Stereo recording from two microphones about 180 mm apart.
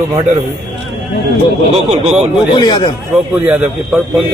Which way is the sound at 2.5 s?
25° left (ahead or behind).